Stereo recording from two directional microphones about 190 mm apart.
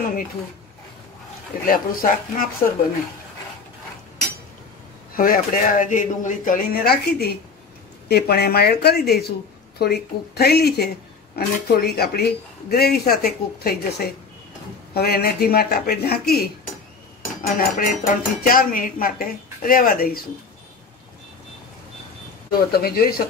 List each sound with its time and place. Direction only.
1.7 s speech: 50° left (ahead or behind)
5.1 s speech: 50° left (ahead or behind)
22.7 s speech: 55° left (ahead or behind)